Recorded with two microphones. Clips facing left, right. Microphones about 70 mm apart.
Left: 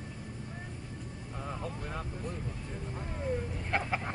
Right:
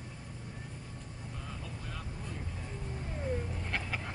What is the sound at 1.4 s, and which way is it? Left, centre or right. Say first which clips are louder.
Vehicle: left 8 dB; left.